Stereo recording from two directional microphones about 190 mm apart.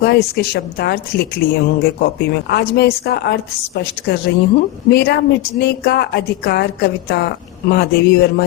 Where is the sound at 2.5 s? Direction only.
55° left (ahead or behind).